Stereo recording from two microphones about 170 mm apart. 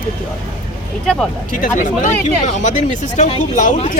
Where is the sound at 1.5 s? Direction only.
50° left (ahead or behind).